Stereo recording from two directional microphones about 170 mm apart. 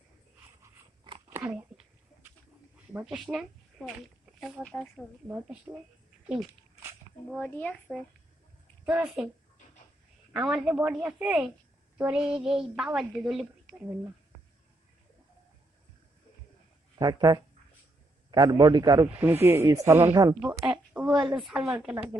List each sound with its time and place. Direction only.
1.3 s a sound: 15° right (ahead or behind)
2.9 s speech: 10° right (ahead or behind)
5.7 s a woman's voice: 15° right (ahead or behind)
6.2 s dog: 10° right (ahead or behind)
7.3 s speech: 10° left (ahead or behind)
8.8 s a woman's voice: 10° right (ahead or behind)
10.3 s a woman's voice: 5° right (ahead or behind)
17.0 s a man's voice: 25° right (ahead or behind)
20.9 s a sound: 5° right (ahead or behind)
21.4 s a woman's voice: 5° right (ahead or behind)